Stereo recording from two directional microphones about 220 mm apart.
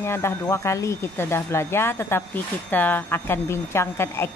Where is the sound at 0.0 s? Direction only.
10° left (ahead or behind).